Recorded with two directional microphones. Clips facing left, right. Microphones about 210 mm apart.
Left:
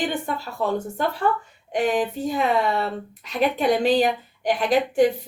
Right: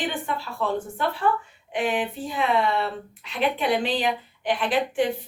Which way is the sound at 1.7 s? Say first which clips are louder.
Left 4 dB; 40° left (ahead or behind).